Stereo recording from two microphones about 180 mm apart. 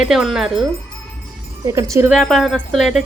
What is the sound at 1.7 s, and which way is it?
Speech, 15° right (ahead or behind).